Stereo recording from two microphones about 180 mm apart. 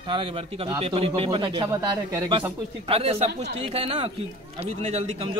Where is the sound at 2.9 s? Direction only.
35° right (ahead or behind).